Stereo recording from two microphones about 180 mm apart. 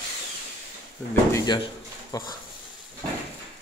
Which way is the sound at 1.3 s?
25° left (ahead or behind).